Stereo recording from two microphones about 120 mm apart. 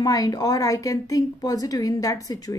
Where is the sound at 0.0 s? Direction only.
30° left (ahead or behind).